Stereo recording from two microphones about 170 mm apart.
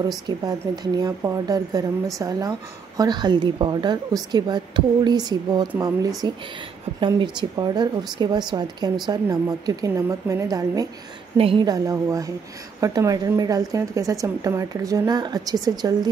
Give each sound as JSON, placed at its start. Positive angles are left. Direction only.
{"t": 0.5, "sound": "a woman's voice", "side_deg": -20}
{"t": 11.3, "sound": "a woman's voice", "side_deg": -30}